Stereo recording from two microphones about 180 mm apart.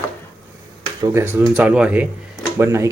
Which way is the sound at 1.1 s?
10° right (ahead or behind).